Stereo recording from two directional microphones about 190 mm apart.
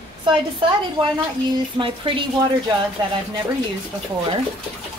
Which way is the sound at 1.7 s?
25° right (ahead or behind).